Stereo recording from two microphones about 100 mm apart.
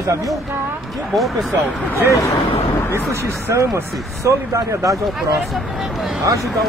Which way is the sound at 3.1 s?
25° right (ahead or behind).